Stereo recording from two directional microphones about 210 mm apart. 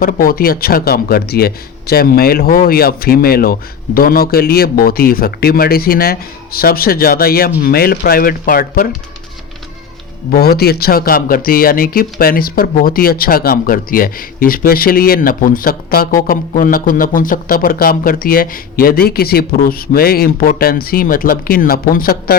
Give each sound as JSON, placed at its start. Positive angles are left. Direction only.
{"t": 0.0, "sound": "speech", "side_deg": 40}
{"t": 10.3, "sound": "speech", "side_deg": 45}